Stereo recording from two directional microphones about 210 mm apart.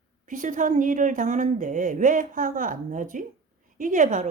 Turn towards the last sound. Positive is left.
turn(degrees=-35)  # may be behind; listen again after turning